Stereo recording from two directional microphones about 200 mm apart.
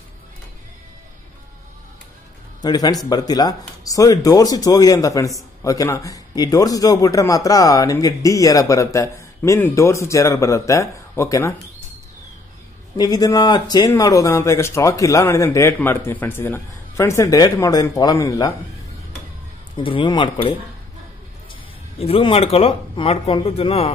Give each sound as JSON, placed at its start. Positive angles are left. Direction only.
{"t": 2.6, "sound": "a man's voice", "side_deg": 20}
{"t": 12.9, "sound": "a man's voice", "side_deg": 20}
{"t": 19.8, "sound": "speech", "side_deg": 25}
{"t": 21.9, "sound": "speech", "side_deg": 30}